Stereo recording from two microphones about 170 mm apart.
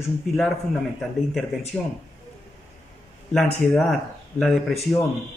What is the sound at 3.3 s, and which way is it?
Speech, centre (ahead or behind).